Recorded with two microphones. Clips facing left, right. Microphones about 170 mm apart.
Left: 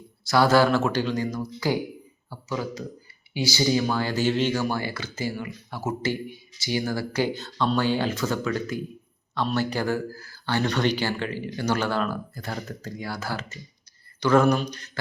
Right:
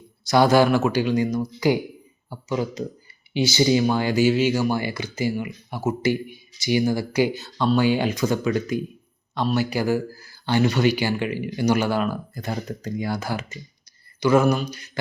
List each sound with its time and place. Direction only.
0.3 s speech: 15° right (ahead or behind)